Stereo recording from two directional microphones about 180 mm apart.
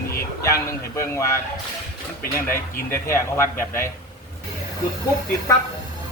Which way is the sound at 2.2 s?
55° left (ahead or behind).